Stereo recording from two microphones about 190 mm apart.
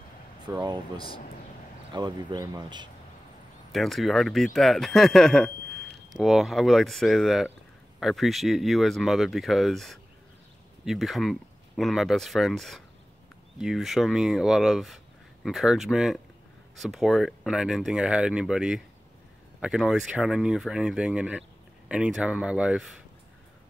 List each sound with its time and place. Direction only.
0.6 s speech: 20° right (ahead or behind)
0.9 s speech: 25° left (ahead or behind)
2.0 s speech: 20° right (ahead or behind)
3.7 s speech: centre (ahead or behind)